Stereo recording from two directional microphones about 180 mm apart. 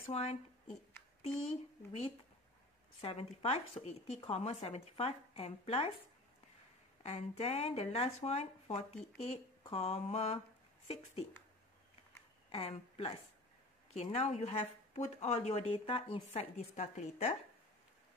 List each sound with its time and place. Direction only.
0.1 s speech: 35° left (ahead or behind)
7.0 s speech: 35° left (ahead or behind)
12.4 s a woman's voice: 35° left (ahead or behind)